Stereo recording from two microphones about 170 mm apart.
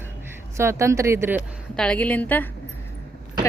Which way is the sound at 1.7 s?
5° left (ahead or behind).